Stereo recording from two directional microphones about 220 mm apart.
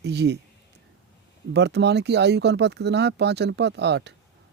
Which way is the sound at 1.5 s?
50° right (ahead or behind).